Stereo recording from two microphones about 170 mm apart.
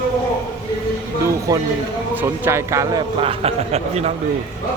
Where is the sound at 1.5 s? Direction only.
20° right (ahead or behind).